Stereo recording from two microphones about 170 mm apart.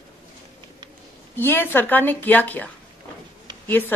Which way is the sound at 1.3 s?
10° left (ahead or behind).